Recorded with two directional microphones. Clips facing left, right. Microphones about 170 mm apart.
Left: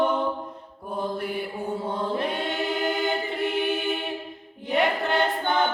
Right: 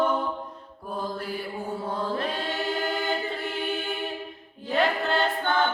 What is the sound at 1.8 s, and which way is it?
Choir, 20° left (ahead or behind).